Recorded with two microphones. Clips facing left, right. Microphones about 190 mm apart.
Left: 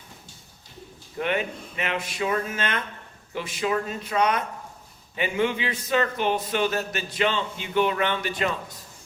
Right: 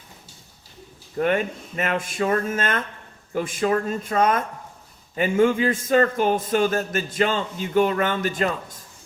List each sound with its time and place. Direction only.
1.2 s a man's voice: 45° right (ahead or behind)